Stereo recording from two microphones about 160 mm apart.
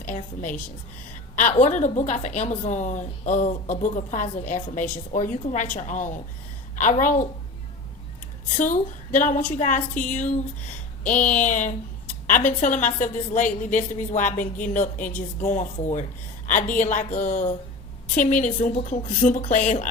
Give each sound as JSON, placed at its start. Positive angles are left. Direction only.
{"t": 1.4, "sound": "a woman's voice", "side_deg": 50}
{"t": 8.5, "sound": "a woman's voice", "side_deg": 55}
{"t": 11.3, "sound": "a woman's voice", "side_deg": 50}